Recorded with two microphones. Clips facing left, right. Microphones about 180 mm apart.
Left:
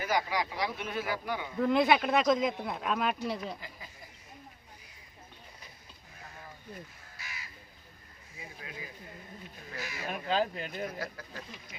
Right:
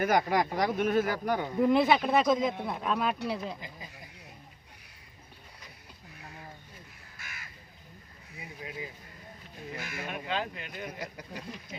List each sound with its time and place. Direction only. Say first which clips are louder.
0.0 s speech: right 5 dB; 55° right (ahead or behind)
1.5 s speech: right 1 dB; 5° right (ahead or behind)
3.6 s a sound: right 2 dB; 20° right (ahead or behind)
7.2 s crow: left 1 dB; 50° right (ahead or behind)
8.4 s a sound: right 4 dB; 20° right (ahead or behind)
9.7 s crow: even; 50° right (ahead or behind)
10.1 s speech: left 4 dB; 35° left (ahead or behind)
11.0 s speech: even; 15° right (ahead or behind)
11.7 s a sound: right 11 dB; 30° right (ahead or behind)